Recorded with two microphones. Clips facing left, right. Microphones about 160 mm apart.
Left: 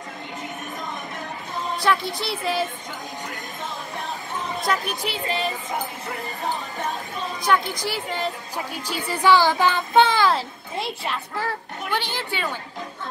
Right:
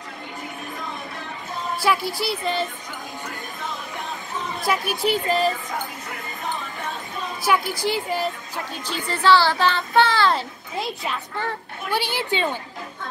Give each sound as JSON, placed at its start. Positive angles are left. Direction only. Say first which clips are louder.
{"t": 1.8, "sound": "a child's voice", "louder": "right 1 dB", "side_deg": -5}
{"t": 4.7, "sound": "a woman's voice", "louder": "right 1 dB", "side_deg": -10}
{"t": 5.0, "sound": "music", "louder": "right 6 dB", "side_deg": -40}
{"t": 5.7, "sound": "basketball bounce", "louder": "left 2 dB", "side_deg": 30}
{"t": 7.4, "sound": "a child's voice", "louder": "right 1 dB", "side_deg": -5}
{"t": 8.7, "sound": "a child's voice", "louder": "right 1 dB", "side_deg": 10}
{"t": 10.3, "sound": "a child's voice", "louder": "even", "side_deg": 0}
{"t": 11.9, "sound": "a woman's voice", "louder": "right 4 dB", "side_deg": -10}